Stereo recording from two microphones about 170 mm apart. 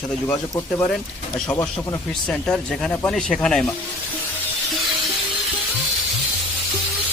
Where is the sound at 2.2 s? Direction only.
5° left (ahead or behind).